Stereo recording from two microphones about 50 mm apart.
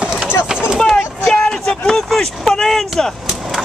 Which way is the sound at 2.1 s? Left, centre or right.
Centre.